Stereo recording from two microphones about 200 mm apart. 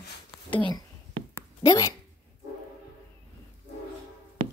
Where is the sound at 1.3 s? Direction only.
15° left (ahead or behind).